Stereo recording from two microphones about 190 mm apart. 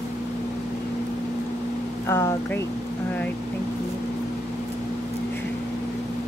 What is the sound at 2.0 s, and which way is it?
Speech, 15° left (ahead or behind).